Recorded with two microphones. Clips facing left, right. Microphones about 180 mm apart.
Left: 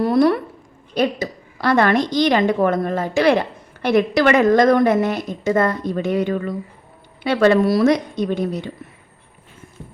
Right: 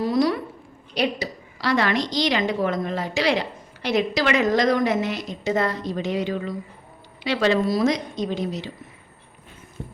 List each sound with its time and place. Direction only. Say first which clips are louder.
0.0 s a woman's voice: left 5 dB; 60° left (ahead or behind)